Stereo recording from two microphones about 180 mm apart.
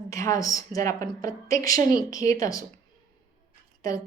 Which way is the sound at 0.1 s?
20° left (ahead or behind).